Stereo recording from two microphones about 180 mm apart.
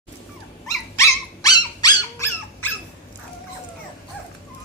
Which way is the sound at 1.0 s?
15° left (ahead or behind).